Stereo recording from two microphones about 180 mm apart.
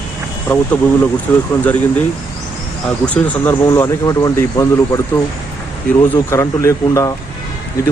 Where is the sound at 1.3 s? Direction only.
10° left (ahead or behind).